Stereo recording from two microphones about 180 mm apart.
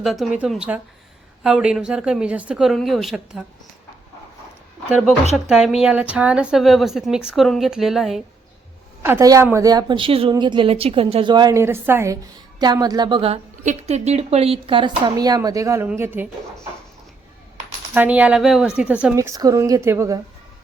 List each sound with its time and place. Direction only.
0.0 s a woman's voice: centre (ahead or behind)
5.5 s a woman's voice: 5° right (ahead or behind)
9.0 s a woman's voice: 15° right (ahead or behind)
17.9 s a woman's voice: 10° right (ahead or behind)
19.1 s a woman's voice: 20° right (ahead or behind)